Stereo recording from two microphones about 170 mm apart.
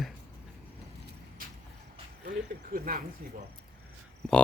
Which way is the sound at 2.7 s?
55° right (ahead or behind).